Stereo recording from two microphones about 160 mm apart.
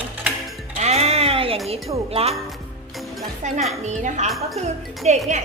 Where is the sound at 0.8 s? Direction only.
40° right (ahead or behind).